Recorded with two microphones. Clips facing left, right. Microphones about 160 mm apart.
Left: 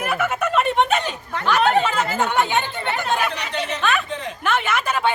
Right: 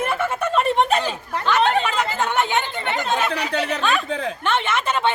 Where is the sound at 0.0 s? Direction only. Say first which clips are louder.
Even; 30° right (ahead or behind).